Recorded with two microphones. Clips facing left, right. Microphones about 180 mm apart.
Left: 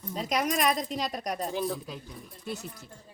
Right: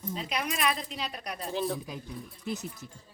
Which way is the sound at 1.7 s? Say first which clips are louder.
Even; 15° right (ahead or behind).